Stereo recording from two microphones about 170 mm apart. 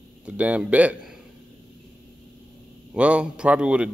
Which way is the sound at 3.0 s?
5° right (ahead or behind).